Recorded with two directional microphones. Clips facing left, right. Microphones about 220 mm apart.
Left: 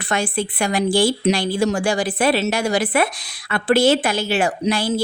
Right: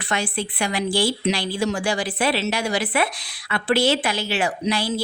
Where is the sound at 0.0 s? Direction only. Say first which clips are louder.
Left 4 dB; 45° left (ahead or behind).